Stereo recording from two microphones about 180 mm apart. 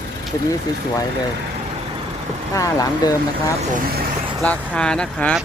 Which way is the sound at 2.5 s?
20° left (ahead or behind).